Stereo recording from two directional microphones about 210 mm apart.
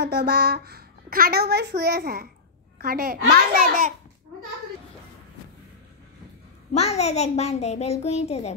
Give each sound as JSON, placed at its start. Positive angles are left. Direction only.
{"t": 0.0, "sound": "a child's voice", "side_deg": -50}
{"t": 6.7, "sound": "a child's voice", "side_deg": 30}